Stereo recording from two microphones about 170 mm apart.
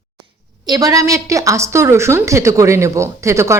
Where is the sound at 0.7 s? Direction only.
20° right (ahead or behind).